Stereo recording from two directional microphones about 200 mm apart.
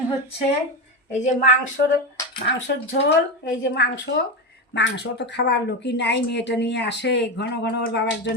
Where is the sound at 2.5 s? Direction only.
60° left (ahead or behind).